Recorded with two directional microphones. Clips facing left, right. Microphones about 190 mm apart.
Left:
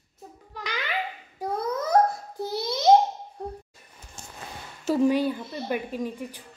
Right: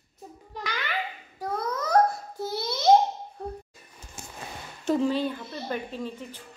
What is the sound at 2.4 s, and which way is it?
Babbling, 15° left (ahead or behind).